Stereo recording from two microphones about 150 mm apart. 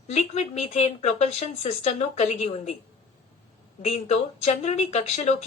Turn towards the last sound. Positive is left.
turn(degrees=45)  # may be behind; listen again after turning